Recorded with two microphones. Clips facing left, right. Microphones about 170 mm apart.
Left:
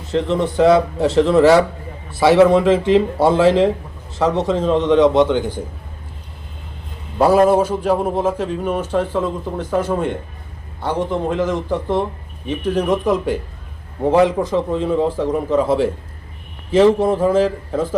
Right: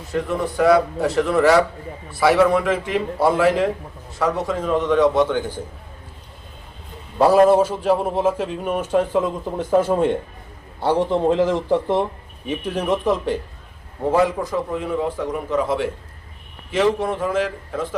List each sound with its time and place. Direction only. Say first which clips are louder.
0.1 s a man's voice: left 5 dB; 25° left (ahead or behind)
7.2 s a man's voice: left 1 dB; centre (ahead or behind)
9.6 s a man's voice: right 3 dB; 25° right (ahead or behind)
12.5 s a man's voice: left 4 dB; 5° right (ahead or behind)
14.0 s a man's voice: left 4 dB; 20° left (ahead or behind)